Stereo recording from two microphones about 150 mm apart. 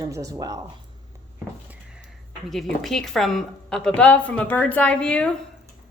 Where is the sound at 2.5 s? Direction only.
Centre (ahead or behind).